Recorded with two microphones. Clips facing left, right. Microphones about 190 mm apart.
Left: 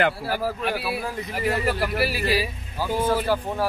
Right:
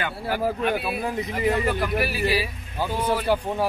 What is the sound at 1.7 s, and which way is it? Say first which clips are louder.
Speech: even; 5° left (ahead or behind).